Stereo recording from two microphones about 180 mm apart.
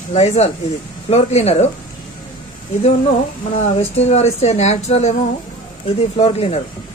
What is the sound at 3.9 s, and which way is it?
Speech, 35° left (ahead or behind).